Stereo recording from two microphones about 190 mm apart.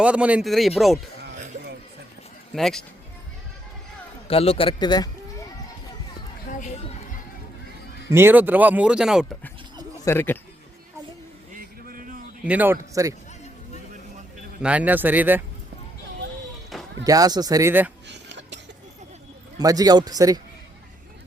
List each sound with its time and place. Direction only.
0.0 s speech: 5° right (ahead or behind)
2.5 s speech: centre (ahead or behind)
4.3 s speech: 30° left (ahead or behind)
6.5 s chatter: 40° left (ahead or behind)
8.1 s speech: 10° right (ahead or behind)
10.0 s speech: 10° left (ahead or behind)
11.5 s vehicle: 45° right (ahead or behind)
12.5 s speech: 10° right (ahead or behind)
14.6 s speech: 5° right (ahead or behind)
17.0 s speech: 20° right (ahead or behind)
18.1 s a sound: 70° right (ahead or behind)
19.5 s speech: 20° right (ahead or behind)